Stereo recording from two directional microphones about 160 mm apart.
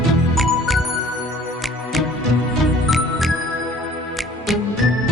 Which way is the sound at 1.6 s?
Centre (ahead or behind).